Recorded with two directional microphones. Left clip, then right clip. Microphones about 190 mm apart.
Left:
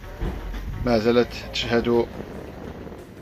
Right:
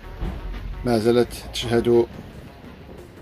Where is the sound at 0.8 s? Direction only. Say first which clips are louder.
Even; 25° right (ahead or behind).